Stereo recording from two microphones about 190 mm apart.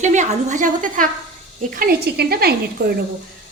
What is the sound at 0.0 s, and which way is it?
A woman's voice, 40° right (ahead or behind).